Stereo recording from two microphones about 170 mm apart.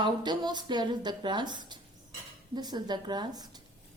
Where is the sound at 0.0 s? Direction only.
25° right (ahead or behind).